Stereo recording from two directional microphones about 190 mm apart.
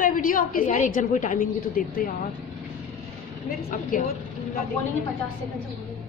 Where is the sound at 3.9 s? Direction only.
45° left (ahead or behind).